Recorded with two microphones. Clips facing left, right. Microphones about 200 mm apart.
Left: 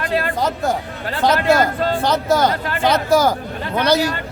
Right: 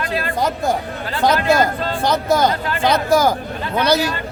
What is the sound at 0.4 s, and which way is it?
Speech, 10° right (ahead or behind).